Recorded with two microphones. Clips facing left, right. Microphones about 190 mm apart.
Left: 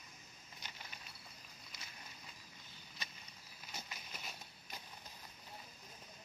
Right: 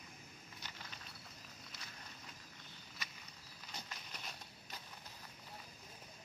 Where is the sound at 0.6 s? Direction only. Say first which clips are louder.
Even; 15° left (ahead or behind).